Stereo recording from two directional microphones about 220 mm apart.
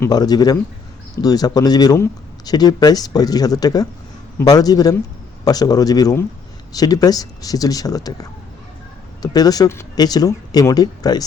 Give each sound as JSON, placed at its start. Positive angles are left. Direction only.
{"t": 0.0, "sound": "speech", "side_deg": 15}